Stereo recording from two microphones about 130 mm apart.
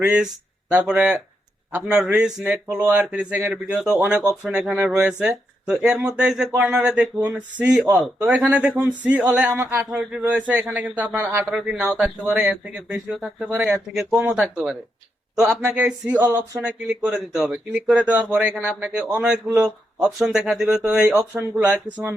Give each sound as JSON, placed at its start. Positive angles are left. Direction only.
{"t": 0.0, "sound": "speech", "side_deg": -5}
{"t": 4.4, "sound": "speech", "side_deg": -5}
{"t": 4.7, "sound": "speech", "side_deg": -15}
{"t": 4.9, "sound": "speech", "side_deg": -5}
{"t": 11.5, "sound": "speech", "side_deg": -5}